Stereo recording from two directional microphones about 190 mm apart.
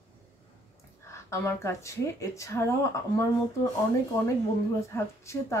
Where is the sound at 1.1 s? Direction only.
15° left (ahead or behind).